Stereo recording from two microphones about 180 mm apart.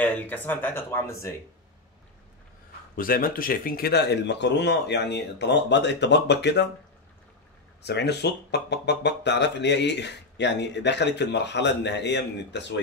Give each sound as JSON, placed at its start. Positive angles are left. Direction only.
{"t": 0.0, "sound": "speech", "side_deg": 10}
{"t": 3.0, "sound": "speech", "side_deg": 50}
{"t": 7.8, "sound": "speech", "side_deg": 70}